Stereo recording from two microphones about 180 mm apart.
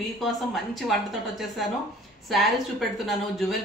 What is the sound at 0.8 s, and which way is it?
Speech, centre (ahead or behind).